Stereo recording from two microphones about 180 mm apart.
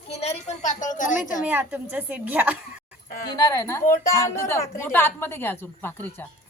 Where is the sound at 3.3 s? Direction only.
20° left (ahead or behind).